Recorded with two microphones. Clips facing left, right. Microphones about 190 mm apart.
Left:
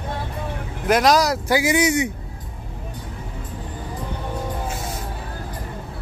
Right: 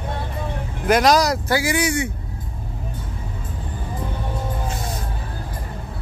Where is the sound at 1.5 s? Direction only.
20° left (ahead or behind).